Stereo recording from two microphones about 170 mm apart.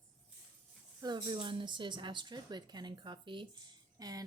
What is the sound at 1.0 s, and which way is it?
Speech, 25° right (ahead or behind).